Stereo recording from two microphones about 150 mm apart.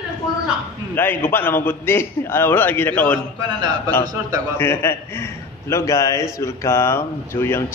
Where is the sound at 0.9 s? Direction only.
15° left (ahead or behind).